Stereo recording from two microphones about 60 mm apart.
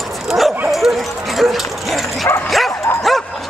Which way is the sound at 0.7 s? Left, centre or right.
Centre.